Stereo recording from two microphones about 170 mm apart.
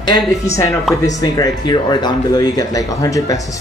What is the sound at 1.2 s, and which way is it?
Speech, 25° left (ahead or behind).